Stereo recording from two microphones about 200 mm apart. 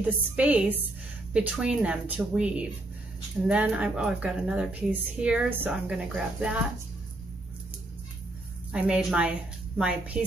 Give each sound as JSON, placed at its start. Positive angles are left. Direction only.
{"t": 0.0, "sound": "a woman's voice", "side_deg": -10}
{"t": 8.7, "sound": "a woman's voice", "side_deg": -5}